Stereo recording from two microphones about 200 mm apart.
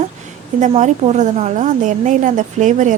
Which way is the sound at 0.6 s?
35° right (ahead or behind).